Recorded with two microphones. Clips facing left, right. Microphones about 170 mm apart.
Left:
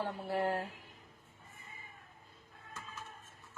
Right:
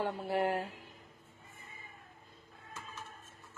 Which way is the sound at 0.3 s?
15° right (ahead or behind).